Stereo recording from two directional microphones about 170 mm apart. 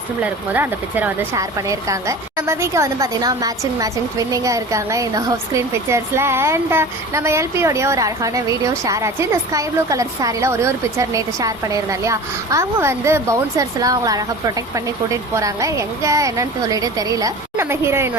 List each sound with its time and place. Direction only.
0.2 s speech: 10° right (ahead or behind)